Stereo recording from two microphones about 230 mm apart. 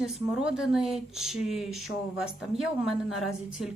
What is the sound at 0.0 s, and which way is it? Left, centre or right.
Speech, centre.